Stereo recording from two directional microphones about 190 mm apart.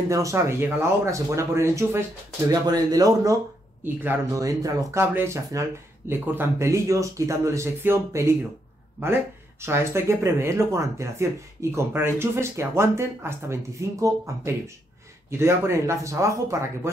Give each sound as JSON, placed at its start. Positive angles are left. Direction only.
{"t": 0.1, "sound": "speech", "side_deg": -15}
{"t": 9.6, "sound": "speech", "side_deg": -15}